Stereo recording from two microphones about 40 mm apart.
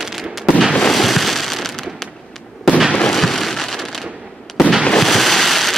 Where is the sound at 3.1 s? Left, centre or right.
Centre.